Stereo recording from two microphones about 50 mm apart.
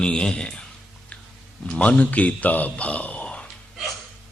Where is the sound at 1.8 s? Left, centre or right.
Left.